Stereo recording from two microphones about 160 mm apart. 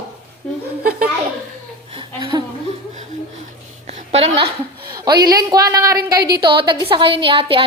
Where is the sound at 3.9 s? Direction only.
40° right (ahead or behind).